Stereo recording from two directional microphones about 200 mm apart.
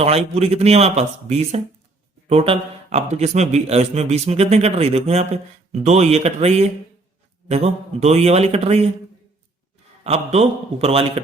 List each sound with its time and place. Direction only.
0.0 s a man's voice: 30° right (ahead or behind)
10.0 s a man's voice: 30° right (ahead or behind)